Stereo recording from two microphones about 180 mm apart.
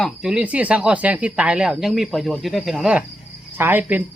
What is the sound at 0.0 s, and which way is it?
A man's voice, 5° right (ahead or behind).